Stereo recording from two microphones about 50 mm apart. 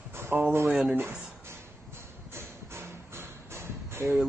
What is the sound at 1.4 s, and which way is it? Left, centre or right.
Music, right.